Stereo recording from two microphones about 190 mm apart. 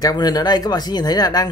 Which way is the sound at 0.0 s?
20° left (ahead or behind).